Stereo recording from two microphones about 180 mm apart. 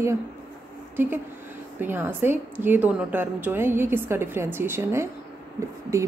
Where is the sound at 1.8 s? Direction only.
10° right (ahead or behind).